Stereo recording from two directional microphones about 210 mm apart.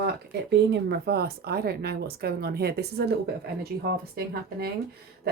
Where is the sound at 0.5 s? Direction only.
55° right (ahead or behind).